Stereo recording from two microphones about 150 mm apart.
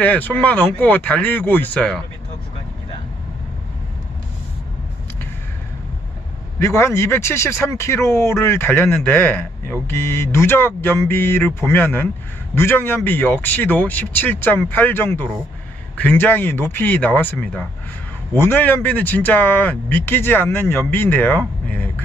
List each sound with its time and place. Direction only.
0.0 s speech: 10° left (ahead or behind)
6.6 s speech: 20° left (ahead or behind)